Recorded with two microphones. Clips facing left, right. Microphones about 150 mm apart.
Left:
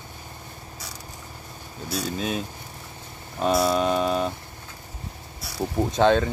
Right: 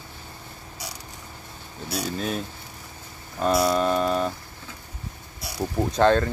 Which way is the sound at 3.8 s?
15° left (ahead or behind).